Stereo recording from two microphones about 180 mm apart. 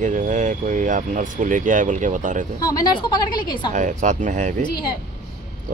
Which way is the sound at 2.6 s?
20° left (ahead or behind).